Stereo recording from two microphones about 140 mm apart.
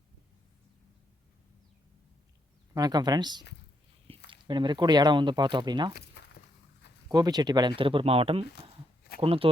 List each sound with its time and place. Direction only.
2.7 s speech: 30° right (ahead or behind)
7.1 s speech: 30° right (ahead or behind)